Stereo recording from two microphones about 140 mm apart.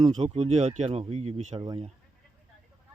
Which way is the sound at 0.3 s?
50° right (ahead or behind).